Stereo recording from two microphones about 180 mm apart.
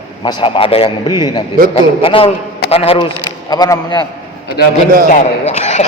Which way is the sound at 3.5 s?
20° left (ahead or behind).